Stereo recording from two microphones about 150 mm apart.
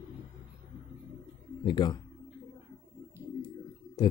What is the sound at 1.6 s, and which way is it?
Speech, 30° left (ahead or behind).